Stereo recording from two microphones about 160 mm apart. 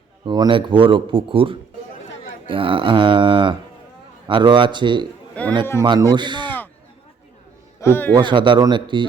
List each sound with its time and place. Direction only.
0.3 s a man's voice: 30° right (ahead or behind)
5.3 s a man's voice: 10° left (ahead or behind)
5.8 s a man's voice: 30° right (ahead or behind)
7.8 s speech: 15° left (ahead or behind)
8.1 s a man's voice: 30° right (ahead or behind)